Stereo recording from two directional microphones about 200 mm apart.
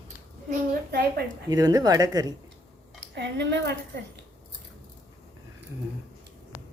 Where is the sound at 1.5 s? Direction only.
20° right (ahead or behind).